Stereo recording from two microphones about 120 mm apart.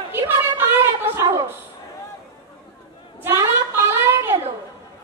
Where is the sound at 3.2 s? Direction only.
20° right (ahead or behind).